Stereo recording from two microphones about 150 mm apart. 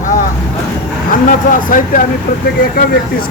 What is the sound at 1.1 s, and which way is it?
Speech, 65° left (ahead or behind).